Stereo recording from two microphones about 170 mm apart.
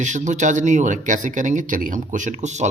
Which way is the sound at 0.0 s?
45° right (ahead or behind).